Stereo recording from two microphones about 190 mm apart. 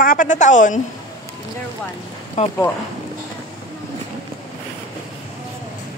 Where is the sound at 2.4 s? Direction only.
35° left (ahead or behind).